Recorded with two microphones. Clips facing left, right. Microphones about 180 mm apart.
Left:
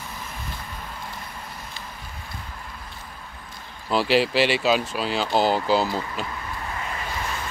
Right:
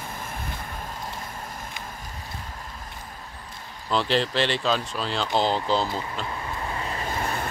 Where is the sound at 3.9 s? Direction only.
5° left (ahead or behind).